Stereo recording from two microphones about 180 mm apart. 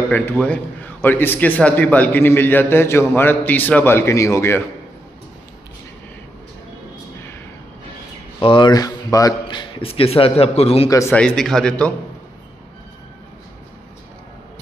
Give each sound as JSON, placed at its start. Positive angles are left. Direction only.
{"t": 0.1, "sound": "a man's voice", "side_deg": 10}
{"t": 8.4, "sound": "speech", "side_deg": 25}
{"t": 10.9, "sound": "a man's voice", "side_deg": 15}
{"t": 11.1, "sound": "a man's voice", "side_deg": 5}